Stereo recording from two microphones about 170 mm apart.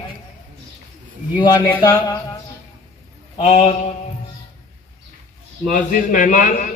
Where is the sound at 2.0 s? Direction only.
20° left (ahead or behind).